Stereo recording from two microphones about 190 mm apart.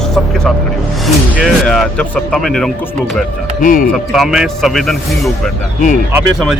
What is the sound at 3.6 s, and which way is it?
Speech, 45° left (ahead or behind).